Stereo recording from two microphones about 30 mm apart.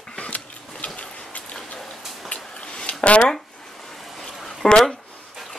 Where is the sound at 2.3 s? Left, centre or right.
Left.